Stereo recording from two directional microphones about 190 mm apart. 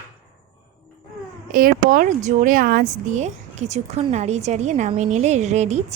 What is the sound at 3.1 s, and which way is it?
A woman's voice, 40° right (ahead or behind).